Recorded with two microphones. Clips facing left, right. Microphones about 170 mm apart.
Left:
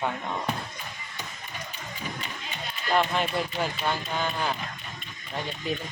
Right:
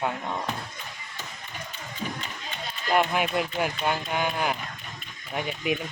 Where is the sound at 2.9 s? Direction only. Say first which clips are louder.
Right 1 dB; 10° right (ahead or behind).